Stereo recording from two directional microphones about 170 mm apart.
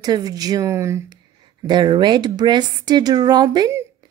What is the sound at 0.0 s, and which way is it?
Speech, 20° right (ahead or behind).